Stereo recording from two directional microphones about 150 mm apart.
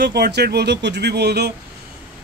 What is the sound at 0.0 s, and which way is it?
Speech, 90° right.